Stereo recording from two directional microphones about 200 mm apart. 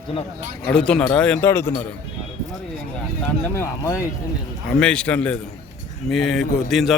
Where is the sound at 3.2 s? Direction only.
10° left (ahead or behind).